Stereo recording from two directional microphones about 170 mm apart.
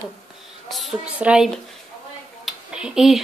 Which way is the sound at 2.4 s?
5° right (ahead or behind).